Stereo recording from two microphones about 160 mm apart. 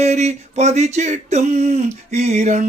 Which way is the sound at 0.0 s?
45° right (ahead or behind).